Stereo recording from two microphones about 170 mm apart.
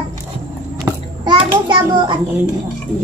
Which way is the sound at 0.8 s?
25° right (ahead or behind).